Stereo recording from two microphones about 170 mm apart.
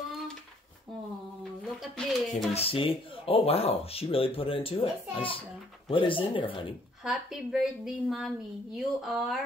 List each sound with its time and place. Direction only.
1.8 s a woman's voice: centre (ahead or behind)
2.5 s speech: 35° left (ahead or behind)
7.1 s a woman's voice: centre (ahead or behind)